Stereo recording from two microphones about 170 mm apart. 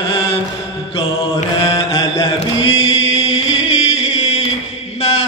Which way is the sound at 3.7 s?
40° left (ahead or behind).